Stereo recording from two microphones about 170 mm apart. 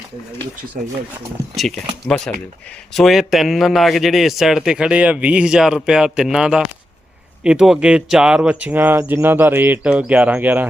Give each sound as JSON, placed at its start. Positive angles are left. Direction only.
{"t": 0.8, "sound": "speech", "side_deg": -50}
{"t": 2.0, "sound": "speech", "side_deg": 5}